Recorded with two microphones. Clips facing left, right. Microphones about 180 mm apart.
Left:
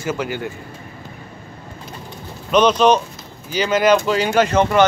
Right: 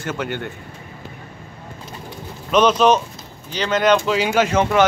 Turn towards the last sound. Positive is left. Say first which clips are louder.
# left 2 dB
turn(degrees=-5)  # may be behind; listen again after turning